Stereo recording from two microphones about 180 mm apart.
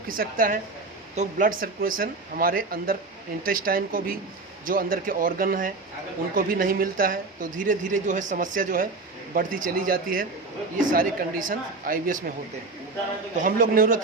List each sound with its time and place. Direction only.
0.2 s a woman's voice: 50° right (ahead or behind)
13.4 s a woman's voice: 50° right (ahead or behind)